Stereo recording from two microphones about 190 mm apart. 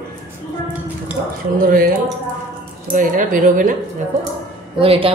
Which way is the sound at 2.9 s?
45° right (ahead or behind).